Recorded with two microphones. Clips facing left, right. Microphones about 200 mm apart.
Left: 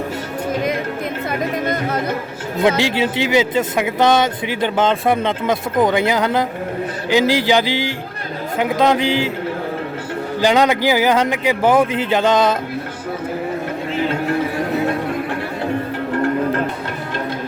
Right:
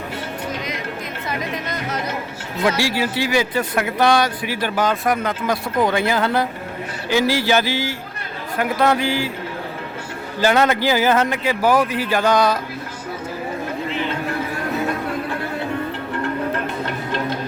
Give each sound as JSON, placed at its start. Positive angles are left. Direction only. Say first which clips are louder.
{"t": 1.3, "sound": "music", "louder": "left 5 dB", "side_deg": 55}
{"t": 2.6, "sound": "speech", "louder": "left 3 dB", "side_deg": 20}
{"t": 10.4, "sound": "speech", "louder": "left 2 dB", "side_deg": 15}